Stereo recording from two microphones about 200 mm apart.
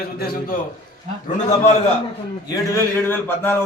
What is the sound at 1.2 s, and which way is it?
Speech, 35° left (ahead or behind).